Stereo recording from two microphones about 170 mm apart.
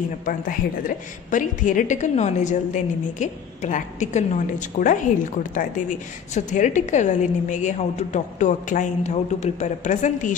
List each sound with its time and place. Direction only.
0.2 s a woman's voice: 55° left (ahead or behind)